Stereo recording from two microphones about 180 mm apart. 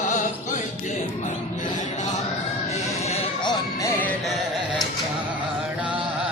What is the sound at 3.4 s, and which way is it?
Music, 25° left (ahead or behind).